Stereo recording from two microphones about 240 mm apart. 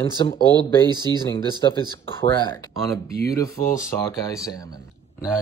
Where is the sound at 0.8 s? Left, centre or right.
Centre.